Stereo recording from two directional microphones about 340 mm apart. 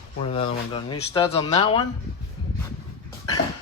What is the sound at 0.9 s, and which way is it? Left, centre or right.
Speech, centre.